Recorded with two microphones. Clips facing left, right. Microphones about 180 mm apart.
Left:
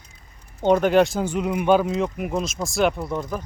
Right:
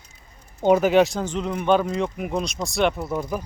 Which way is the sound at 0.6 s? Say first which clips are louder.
Even; 5° right (ahead or behind).